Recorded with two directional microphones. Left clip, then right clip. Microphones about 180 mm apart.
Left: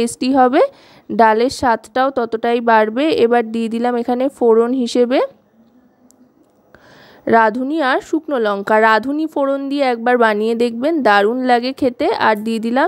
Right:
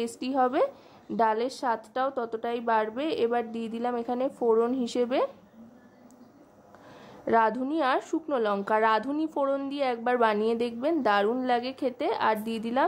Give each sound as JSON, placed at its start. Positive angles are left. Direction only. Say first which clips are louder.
{"t": 0.0, "sound": "a woman's voice", "louder": "left 13 dB", "side_deg": 45}
{"t": 7.2, "sound": "a woman's voice", "louder": "left 11 dB", "side_deg": 40}